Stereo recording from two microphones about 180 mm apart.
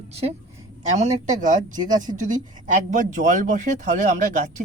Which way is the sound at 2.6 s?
45° right (ahead or behind).